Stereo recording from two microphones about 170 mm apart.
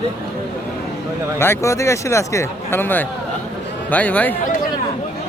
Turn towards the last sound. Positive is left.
turn(degrees=10)  # may be behind; listen again after turning